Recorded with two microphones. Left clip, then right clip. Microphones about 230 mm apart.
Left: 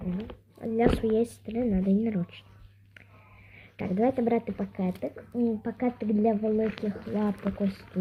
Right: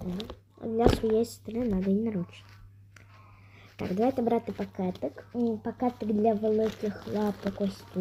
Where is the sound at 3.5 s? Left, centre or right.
Centre.